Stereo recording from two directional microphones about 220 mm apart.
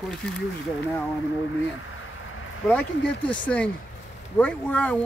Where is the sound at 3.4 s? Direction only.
5° left (ahead or behind).